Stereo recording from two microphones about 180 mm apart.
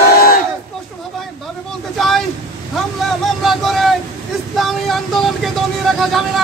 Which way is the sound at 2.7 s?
Centre (ahead or behind).